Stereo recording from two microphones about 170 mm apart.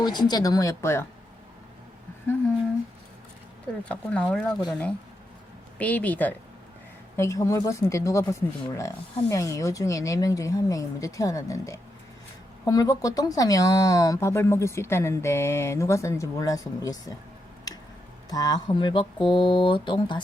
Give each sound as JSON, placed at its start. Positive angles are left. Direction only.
{"t": 0.0, "sound": "speech", "side_deg": 25}
{"t": 3.8, "sound": "speech", "side_deg": 5}
{"t": 17.7, "sound": "tick-tock", "side_deg": 20}
{"t": 18.3, "sound": "speech", "side_deg": 25}